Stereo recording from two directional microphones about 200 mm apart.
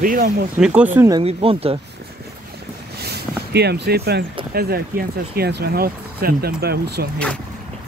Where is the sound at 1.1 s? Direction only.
30° right (ahead or behind).